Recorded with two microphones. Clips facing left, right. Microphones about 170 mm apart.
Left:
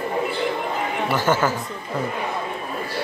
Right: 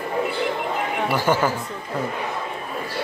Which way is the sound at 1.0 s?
10° right (ahead or behind).